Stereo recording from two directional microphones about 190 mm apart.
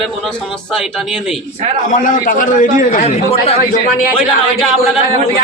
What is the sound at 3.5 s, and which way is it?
Speech, 45° left (ahead or behind).